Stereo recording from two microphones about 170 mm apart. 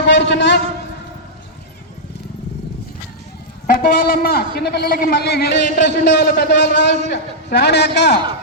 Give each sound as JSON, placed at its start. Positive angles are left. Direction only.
{"t": 0.0, "sound": "a man's voice", "side_deg": 85}
{"t": 3.7, "sound": "a man's voice", "side_deg": 60}